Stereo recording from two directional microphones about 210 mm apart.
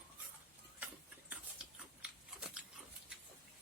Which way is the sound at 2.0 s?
5° right (ahead or behind).